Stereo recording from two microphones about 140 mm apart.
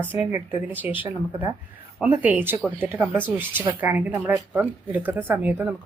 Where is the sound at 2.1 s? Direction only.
15° right (ahead or behind).